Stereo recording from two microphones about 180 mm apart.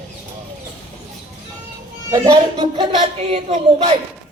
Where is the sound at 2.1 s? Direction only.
20° right (ahead or behind).